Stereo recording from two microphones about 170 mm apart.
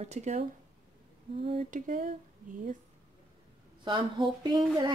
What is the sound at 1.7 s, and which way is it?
Speech, 50° right (ahead or behind).